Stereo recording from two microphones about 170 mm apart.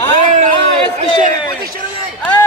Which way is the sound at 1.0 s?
45° right (ahead or behind).